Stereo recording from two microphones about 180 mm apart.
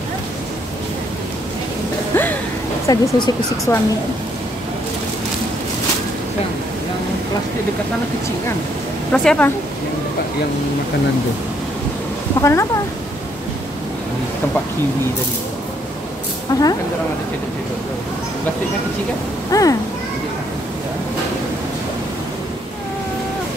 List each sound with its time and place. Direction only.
2.1 s music: 10° left (ahead or behind)
2.9 s speech: 20° left (ahead or behind)
9.1 s speech: 5° left (ahead or behind)
12.4 s speech: 15° left (ahead or behind)
19.5 s speech: 20° left (ahead or behind)